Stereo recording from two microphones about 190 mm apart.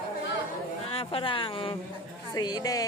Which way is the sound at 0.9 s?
30° left (ahead or behind).